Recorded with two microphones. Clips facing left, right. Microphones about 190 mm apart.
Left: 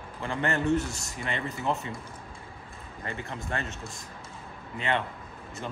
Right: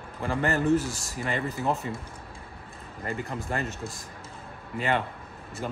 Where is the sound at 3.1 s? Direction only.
35° right (ahead or behind).